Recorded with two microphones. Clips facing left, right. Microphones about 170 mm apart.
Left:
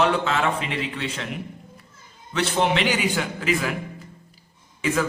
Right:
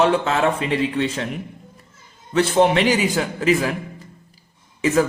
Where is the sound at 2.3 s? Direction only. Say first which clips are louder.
Right 6 dB; 45° right (ahead or behind).